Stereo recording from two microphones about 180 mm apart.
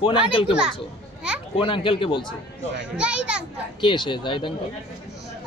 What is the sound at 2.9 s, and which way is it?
Speech, 5° right (ahead or behind).